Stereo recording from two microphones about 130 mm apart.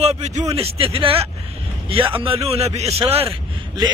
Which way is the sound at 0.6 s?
45° right (ahead or behind).